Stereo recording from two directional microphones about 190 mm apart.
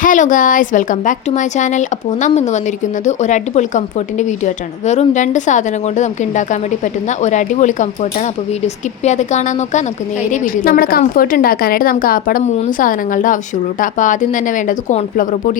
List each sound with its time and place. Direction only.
0.0 s a woman's voice: 45° left (ahead or behind)